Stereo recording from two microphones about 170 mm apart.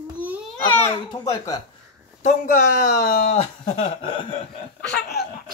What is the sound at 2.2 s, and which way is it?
Speech, 50° left (ahead or behind).